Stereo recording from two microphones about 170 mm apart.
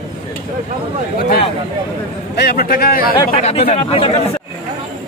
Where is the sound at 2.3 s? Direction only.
65° left (ahead or behind).